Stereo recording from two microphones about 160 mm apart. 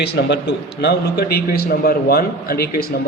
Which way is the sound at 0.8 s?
80° left.